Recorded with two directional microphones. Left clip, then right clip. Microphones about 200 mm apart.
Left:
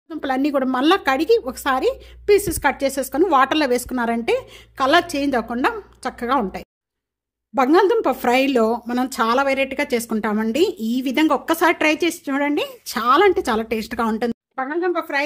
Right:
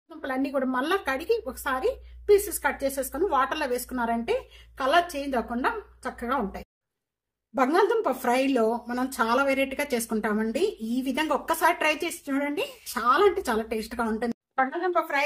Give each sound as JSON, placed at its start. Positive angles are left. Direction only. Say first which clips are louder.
{"t": 0.2, "sound": "speech", "louder": "left 7 dB", "side_deg": 50}